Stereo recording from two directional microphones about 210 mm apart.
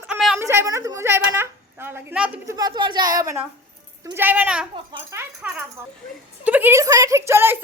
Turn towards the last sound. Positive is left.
turn(degrees=-10)  # may be behind; listen again after turning